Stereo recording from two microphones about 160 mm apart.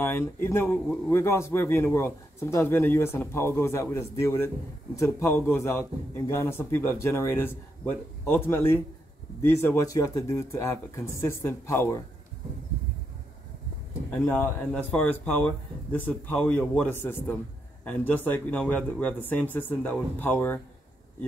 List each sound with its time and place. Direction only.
0.0 s a man's voice: 15° left (ahead or behind)
14.1 s a man's voice: 15° left (ahead or behind)